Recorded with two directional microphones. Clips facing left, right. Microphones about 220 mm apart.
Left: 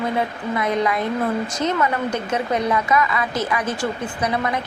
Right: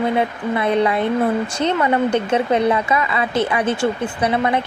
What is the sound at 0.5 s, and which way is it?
Speech, 30° right (ahead or behind).